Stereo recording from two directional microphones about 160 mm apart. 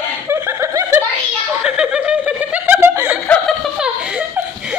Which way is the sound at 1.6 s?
5° right (ahead or behind).